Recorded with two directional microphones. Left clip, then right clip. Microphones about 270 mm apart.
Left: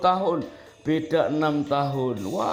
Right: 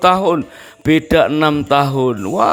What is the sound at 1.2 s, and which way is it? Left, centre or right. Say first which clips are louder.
Speech: right 9 dB; right.